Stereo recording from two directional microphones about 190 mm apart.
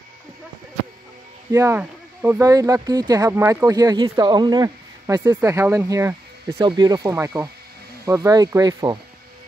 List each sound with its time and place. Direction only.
1.5 s speech: 15° right (ahead or behind)